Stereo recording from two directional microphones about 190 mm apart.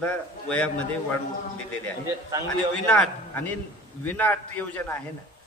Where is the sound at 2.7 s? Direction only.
5° left (ahead or behind).